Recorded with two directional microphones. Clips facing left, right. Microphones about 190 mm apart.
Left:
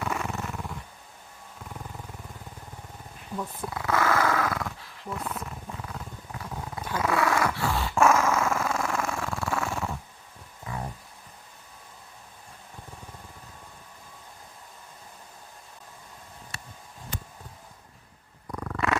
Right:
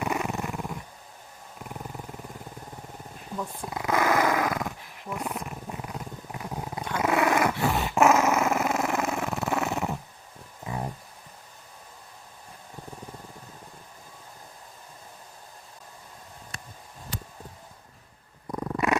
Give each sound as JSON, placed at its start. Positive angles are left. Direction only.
{"t": 0.0, "sound": "dog", "side_deg": -15}
{"t": 3.7, "sound": "dog", "side_deg": -15}
{"t": 10.7, "sound": "a sound", "side_deg": -20}
{"t": 18.5, "sound": "purr", "side_deg": -20}